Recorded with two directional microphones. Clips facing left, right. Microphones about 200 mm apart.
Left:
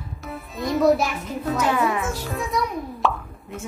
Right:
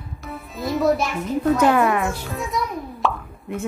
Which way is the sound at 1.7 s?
55° right (ahead or behind).